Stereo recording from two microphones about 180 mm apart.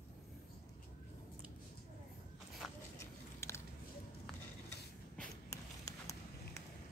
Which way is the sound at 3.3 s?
15° left (ahead or behind).